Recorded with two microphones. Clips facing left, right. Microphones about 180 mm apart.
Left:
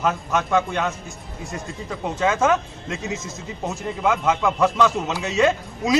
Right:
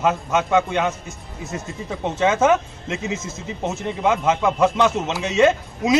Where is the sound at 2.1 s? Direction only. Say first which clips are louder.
Right 3 dB; 20° right (ahead or behind).